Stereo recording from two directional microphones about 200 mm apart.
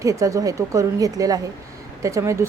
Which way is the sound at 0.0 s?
15° right (ahead or behind).